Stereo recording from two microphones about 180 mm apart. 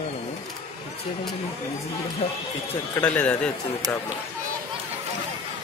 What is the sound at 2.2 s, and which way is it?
Speech, 35° left (ahead or behind).